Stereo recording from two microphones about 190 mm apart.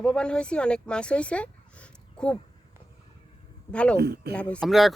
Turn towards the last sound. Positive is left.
turn(degrees=0)  # may be behind; listen again after turning